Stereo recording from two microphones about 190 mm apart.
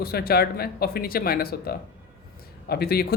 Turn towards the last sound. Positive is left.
turn(degrees=55)  # may be behind; listen again after turning